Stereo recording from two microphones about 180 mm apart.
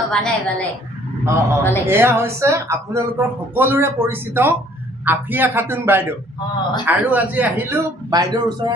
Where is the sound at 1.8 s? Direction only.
15° right (ahead or behind).